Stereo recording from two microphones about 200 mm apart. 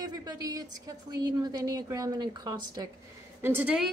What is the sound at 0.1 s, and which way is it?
A woman's voice, 20° right (ahead or behind).